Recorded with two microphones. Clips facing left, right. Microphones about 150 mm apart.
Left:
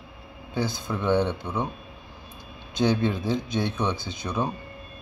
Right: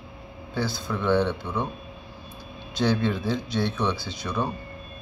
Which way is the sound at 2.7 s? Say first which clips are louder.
Left 1 dB; 20° left (ahead or behind).